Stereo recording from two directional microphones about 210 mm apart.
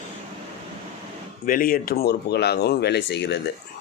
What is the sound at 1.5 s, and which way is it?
Speech, 40° left (ahead or behind).